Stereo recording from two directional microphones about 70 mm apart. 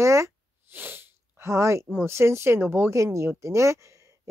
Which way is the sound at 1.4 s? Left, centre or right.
Right.